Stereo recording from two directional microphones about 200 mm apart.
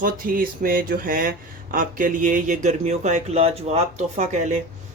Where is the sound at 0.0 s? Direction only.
45° right (ahead or behind).